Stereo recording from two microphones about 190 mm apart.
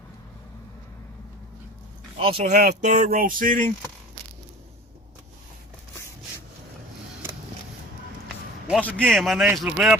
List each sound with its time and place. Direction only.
2.4 s speech: 40° right (ahead or behind)
8.8 s a man's voice: 5° left (ahead or behind)